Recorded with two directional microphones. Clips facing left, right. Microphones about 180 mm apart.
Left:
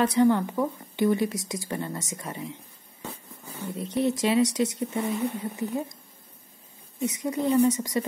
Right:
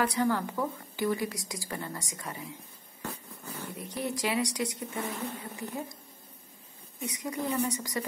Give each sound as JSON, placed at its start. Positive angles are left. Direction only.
{"t": 0.0, "sound": "speech", "side_deg": 20}
{"t": 3.5, "sound": "speech", "side_deg": 20}
{"t": 5.1, "sound": "speech", "side_deg": 10}
{"t": 5.4, "sound": "speech", "side_deg": 20}
{"t": 7.0, "sound": "speech", "side_deg": 25}